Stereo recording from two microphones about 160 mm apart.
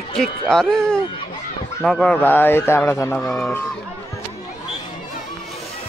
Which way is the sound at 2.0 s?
10° left (ahead or behind).